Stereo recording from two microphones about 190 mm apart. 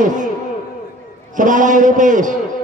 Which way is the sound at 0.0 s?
40° right (ahead or behind).